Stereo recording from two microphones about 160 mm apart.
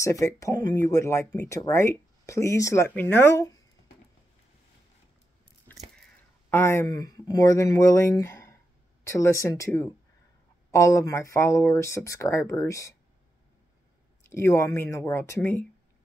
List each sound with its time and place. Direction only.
0.0 s speech: 20° left (ahead or behind)
6.5 s speech: 15° left (ahead or behind)
14.2 s speech: 15° left (ahead or behind)